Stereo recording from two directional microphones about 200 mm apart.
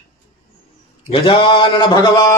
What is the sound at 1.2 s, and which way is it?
Mantra, 25° left (ahead or behind).